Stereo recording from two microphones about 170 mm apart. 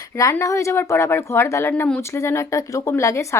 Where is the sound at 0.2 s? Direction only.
20° left (ahead or behind).